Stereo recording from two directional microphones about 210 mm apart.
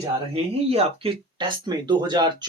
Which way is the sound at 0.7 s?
25° right (ahead or behind).